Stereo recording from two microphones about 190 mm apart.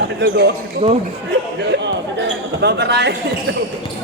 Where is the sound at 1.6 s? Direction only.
65° right (ahead or behind).